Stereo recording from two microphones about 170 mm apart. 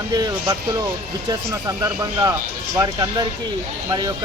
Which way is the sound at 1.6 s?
20° right (ahead or behind).